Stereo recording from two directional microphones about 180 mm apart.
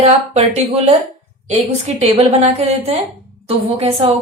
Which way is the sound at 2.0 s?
35° right (ahead or behind).